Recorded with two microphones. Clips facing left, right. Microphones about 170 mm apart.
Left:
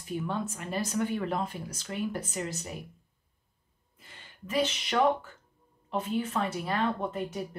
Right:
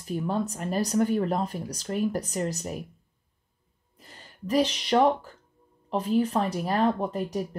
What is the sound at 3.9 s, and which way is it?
A woman's voice, 40° right (ahead or behind).